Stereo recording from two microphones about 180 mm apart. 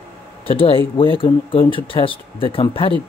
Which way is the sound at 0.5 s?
30° left (ahead or behind).